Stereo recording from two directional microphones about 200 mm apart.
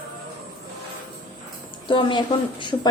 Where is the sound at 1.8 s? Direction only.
25° left (ahead or behind).